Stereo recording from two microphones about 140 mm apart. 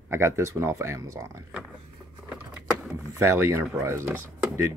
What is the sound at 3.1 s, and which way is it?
Speech, 20° right (ahead or behind).